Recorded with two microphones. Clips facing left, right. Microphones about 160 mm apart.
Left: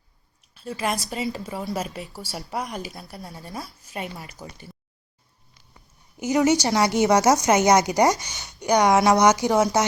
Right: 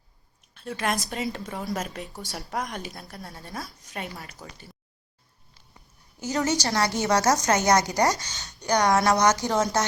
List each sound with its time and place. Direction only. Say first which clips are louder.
0.5 s a woman's voice: left 1 dB; 5° left (ahead or behind)
6.1 s a woman's voice: left 6 dB; 20° left (ahead or behind)